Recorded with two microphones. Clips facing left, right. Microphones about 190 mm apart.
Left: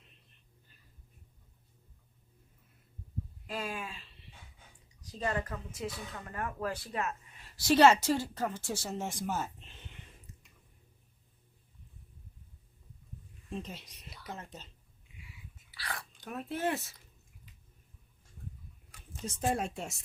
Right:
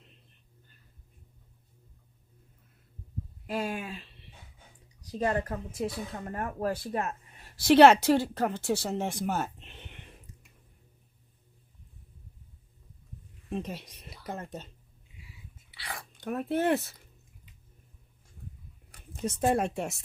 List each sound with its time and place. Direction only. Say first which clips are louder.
3.4 s speech: right 7 dB; 45° right (ahead or behind)
5.2 s speech: right 5 dB; 50° right (ahead or behind)
7.0 s a sound: right 2 dB; 35° right (ahead or behind)
7.6 s speech: right 5 dB; 65° right (ahead or behind)
13.5 s speech: right 6 dB; 60° right (ahead or behind)
15.7 s a sound: even; 25° right (ahead or behind)
16.2 s speech: right 7 dB; 60° right (ahead or behind)
19.2 s speech: right 6 dB; 65° right (ahead or behind)